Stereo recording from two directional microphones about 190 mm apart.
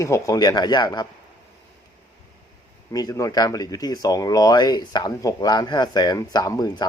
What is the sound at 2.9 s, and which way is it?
Speech, 20° left (ahead or behind).